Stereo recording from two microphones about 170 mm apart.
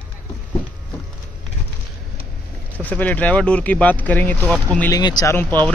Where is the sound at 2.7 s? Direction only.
10° left (ahead or behind).